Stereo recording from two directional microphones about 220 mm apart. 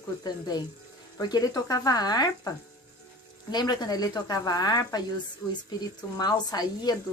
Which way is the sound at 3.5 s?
20° left (ahead or behind).